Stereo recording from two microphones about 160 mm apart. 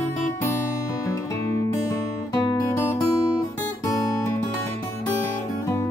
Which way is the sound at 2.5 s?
15° left (ahead or behind).